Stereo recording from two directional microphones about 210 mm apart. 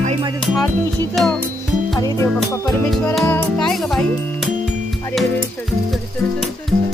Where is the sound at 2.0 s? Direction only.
15° left (ahead or behind).